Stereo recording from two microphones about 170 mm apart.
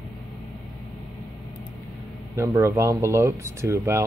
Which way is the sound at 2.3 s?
15° right (ahead or behind).